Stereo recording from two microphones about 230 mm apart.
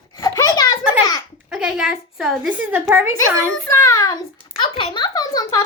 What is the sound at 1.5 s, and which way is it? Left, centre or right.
A woman's voice, centre.